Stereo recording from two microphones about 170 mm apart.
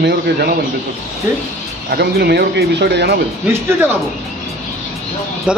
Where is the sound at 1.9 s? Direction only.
75° right (ahead or behind).